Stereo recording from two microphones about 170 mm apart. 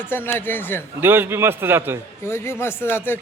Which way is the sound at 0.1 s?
10° left (ahead or behind).